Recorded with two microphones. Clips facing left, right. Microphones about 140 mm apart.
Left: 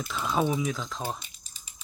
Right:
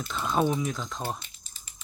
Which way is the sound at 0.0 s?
Centre (ahead or behind).